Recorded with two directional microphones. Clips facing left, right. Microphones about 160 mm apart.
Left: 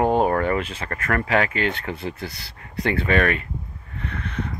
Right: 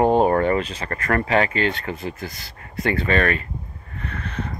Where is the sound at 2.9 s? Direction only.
10° left (ahead or behind).